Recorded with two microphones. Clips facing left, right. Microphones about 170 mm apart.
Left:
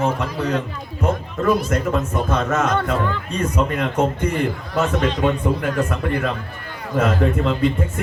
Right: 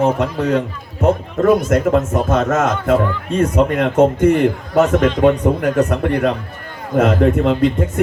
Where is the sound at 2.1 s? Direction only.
45° right (ahead or behind).